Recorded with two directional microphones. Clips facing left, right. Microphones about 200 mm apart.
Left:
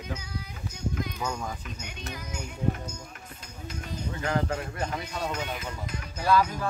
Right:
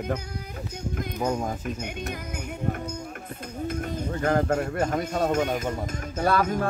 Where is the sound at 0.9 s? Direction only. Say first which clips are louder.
Right 8 dB; 50° right (ahead or behind).